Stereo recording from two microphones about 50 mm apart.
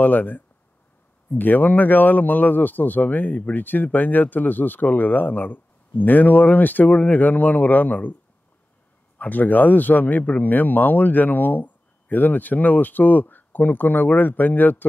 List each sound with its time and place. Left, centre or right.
0.0 s speech: left
9.2 s speech: left